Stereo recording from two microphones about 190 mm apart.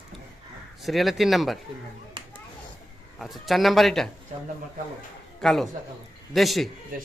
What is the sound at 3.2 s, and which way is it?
Speech, centre (ahead or behind).